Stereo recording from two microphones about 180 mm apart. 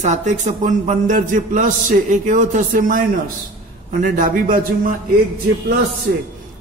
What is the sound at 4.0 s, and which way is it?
Speech, 45° right (ahead or behind).